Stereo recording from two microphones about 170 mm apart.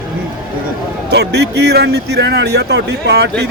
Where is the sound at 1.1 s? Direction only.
80° right.